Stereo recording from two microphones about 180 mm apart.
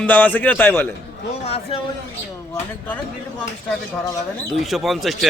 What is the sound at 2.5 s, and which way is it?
Speech, 10° left (ahead or behind).